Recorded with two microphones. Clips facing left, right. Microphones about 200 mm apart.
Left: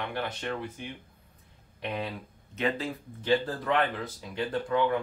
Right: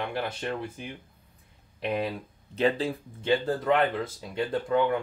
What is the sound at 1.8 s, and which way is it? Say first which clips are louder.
Speech: right 5 dB; 30° right (ahead or behind).